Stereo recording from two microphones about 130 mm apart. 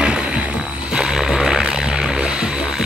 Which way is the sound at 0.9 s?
5° right (ahead or behind).